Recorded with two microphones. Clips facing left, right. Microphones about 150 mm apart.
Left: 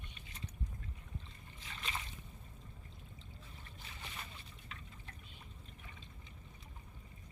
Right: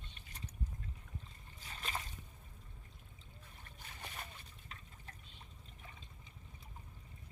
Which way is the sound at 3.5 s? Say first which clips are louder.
Right 1 dB; 50° right (ahead or behind).